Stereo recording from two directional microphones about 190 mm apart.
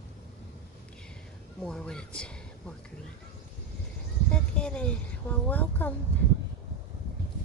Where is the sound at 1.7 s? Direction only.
5° left (ahead or behind).